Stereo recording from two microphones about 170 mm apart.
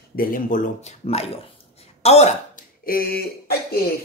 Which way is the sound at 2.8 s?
60° left (ahead or behind).